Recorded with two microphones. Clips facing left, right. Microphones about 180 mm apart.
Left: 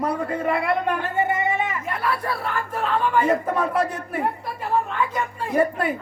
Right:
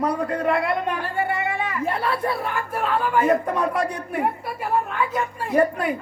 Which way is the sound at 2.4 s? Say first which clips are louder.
Even; 10° right (ahead or behind).